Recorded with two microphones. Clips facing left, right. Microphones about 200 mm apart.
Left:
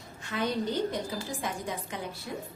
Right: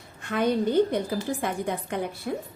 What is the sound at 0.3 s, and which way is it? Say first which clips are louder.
A woman's voice: right 7 dB; 55° right (ahead or behind).